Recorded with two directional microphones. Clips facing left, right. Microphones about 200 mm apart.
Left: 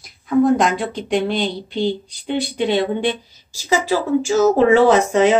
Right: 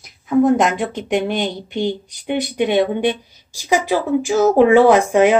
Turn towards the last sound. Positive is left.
turn(degrees=-10)  # may be behind; listen again after turning